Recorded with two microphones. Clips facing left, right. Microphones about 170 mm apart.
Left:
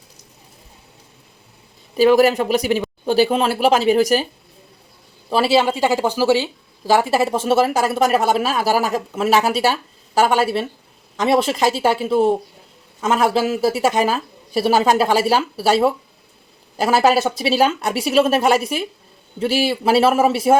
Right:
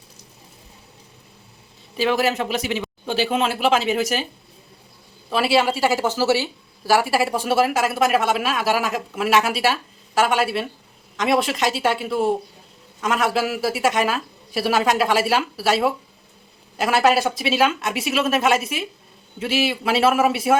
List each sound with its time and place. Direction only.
2.0 s speech: 40° left (ahead or behind)
5.3 s speech: 30° left (ahead or behind)